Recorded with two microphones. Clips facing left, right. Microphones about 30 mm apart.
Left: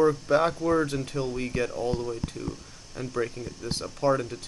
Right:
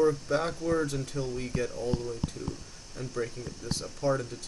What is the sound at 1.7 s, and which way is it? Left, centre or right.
Speech, left.